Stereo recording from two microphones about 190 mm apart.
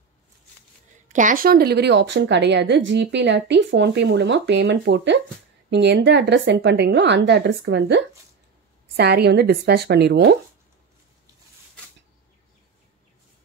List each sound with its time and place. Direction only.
1.0 s a woman's voice: 40° right (ahead or behind); by 10.3 s 60° right (ahead or behind)